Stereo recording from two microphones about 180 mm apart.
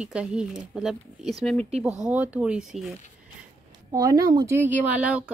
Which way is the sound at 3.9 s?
20° right (ahead or behind).